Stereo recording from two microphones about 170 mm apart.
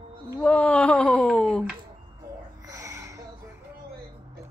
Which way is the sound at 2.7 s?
20° right (ahead or behind).